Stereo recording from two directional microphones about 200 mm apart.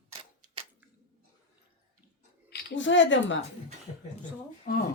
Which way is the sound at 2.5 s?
65° left (ahead or behind).